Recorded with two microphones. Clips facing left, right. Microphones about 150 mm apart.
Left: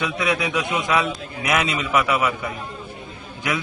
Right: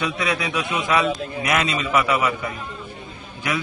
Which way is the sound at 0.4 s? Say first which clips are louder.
Left 1 dB; 20° left (ahead or behind).